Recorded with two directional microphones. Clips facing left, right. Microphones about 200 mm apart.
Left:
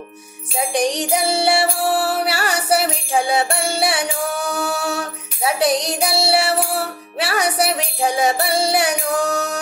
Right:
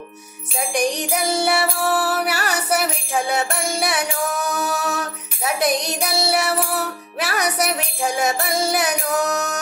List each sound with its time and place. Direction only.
0.6 s music: 30° left (ahead or behind)